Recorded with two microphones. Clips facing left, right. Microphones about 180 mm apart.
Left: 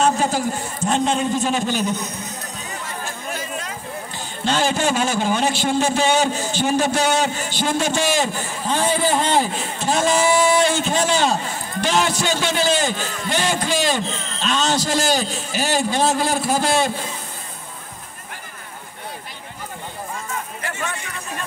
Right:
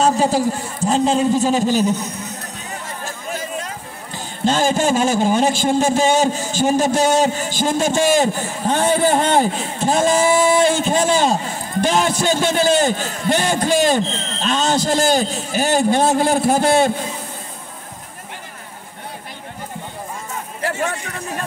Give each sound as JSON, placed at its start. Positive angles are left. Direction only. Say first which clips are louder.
{"t": 0.0, "sound": "a man's voice", "louder": "right 3 dB", "side_deg": -30}
{"t": 4.5, "sound": "a man's voice", "louder": "right 3 dB", "side_deg": -45}
{"t": 20.6, "sound": "a sound", "louder": "right 9 dB", "side_deg": -35}